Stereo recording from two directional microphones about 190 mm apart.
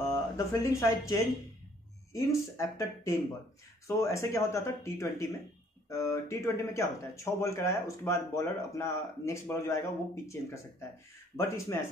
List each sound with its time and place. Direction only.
0.4 s speech: 15° left (ahead or behind)
2.1 s speech: 15° left (ahead or behind)